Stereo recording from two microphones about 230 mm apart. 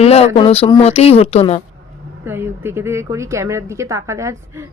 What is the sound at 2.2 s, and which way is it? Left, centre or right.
A woman's voice, centre.